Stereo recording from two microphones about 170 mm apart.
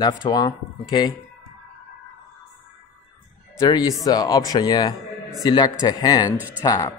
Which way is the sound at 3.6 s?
20° left (ahead or behind).